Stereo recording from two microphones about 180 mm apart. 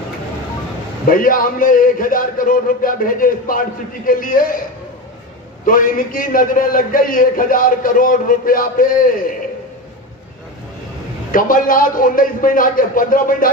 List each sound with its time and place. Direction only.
1.0 s a man's voice: 50° left (ahead or behind)
5.7 s a man's voice: 50° left (ahead or behind)
11.3 s a man's voice: 50° left (ahead or behind)